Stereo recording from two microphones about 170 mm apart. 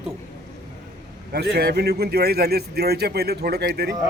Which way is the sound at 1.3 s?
65° right (ahead or behind).